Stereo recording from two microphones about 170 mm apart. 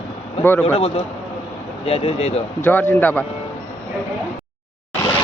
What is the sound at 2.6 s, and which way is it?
Speech, 10° left (ahead or behind).